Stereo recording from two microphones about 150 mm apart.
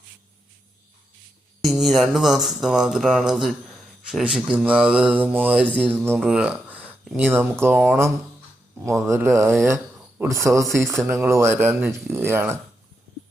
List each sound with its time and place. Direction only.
1.6 s mantra: centre (ahead or behind)
5.7 s speech: 10° right (ahead or behind)